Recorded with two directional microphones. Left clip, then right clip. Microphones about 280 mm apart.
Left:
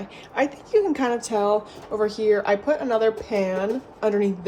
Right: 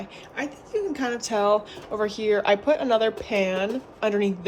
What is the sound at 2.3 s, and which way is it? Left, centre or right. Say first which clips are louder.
A woman's voice: right 1 dB; right.